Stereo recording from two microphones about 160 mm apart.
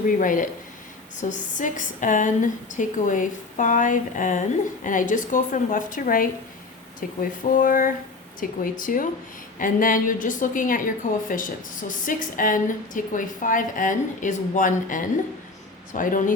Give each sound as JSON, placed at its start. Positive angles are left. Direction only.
{"t": 0.2, "sound": "a woman's voice", "side_deg": 55}